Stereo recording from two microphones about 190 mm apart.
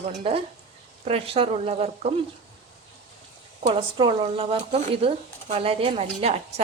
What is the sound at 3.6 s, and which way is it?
A woman's voice, 25° right (ahead or behind).